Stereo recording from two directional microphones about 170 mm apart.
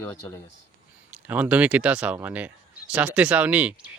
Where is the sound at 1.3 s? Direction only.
10° right (ahead or behind).